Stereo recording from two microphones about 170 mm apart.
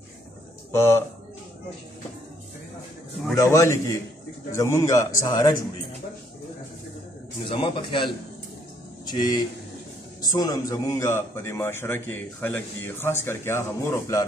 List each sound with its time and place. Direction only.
0.7 s speech: 15° left (ahead or behind)
3.3 s a man's voice: 15° left (ahead or behind)
7.4 s a man's voice: 30° left (ahead or behind)